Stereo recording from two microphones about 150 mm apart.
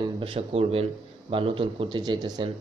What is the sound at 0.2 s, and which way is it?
Speech, 40° right (ahead or behind).